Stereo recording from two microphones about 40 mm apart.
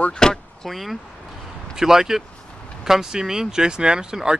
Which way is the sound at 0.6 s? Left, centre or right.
Centre.